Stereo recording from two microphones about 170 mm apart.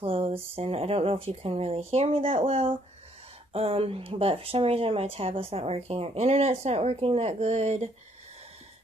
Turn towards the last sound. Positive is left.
turn(degrees=-40)  # may be behind; listen again after turning